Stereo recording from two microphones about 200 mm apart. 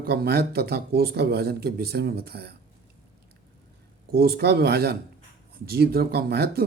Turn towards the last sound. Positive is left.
turn(degrees=-50)  # may be behind; listen again after turning